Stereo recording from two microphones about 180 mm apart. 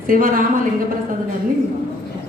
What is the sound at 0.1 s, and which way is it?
Speech, 50° right (ahead or behind).